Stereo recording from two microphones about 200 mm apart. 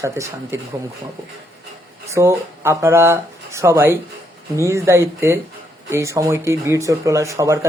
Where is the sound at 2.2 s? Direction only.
15° right (ahead or behind).